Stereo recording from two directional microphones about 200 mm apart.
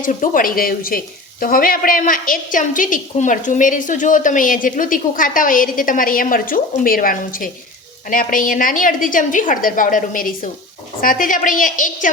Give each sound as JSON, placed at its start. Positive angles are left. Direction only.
{"t": 0.0, "sound": "a woman's voice", "side_deg": 40}